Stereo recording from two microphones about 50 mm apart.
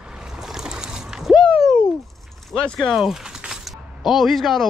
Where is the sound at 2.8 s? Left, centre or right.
Centre.